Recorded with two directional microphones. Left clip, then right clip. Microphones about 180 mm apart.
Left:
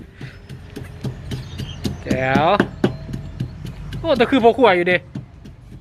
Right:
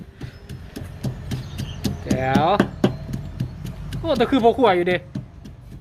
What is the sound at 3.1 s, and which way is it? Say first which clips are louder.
Clip-clop: left 1 dB; 30° right (ahead or behind).